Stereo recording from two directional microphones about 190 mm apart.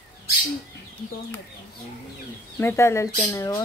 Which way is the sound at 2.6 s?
10° left (ahead or behind).